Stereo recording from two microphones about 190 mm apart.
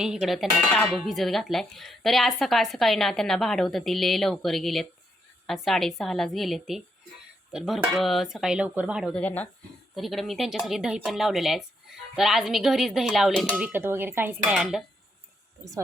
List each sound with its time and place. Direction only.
0.0 s dishes: centre (ahead or behind)